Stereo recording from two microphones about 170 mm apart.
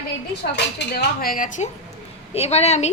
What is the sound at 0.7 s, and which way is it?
Speech, 75° left (ahead or behind).